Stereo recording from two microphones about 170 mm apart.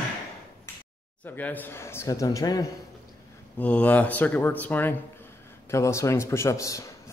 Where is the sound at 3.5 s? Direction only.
10° left (ahead or behind).